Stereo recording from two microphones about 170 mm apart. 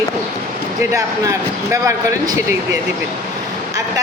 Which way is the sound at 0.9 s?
20° right (ahead or behind).